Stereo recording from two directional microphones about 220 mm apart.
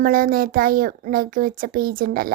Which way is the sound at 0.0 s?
40° right (ahead or behind).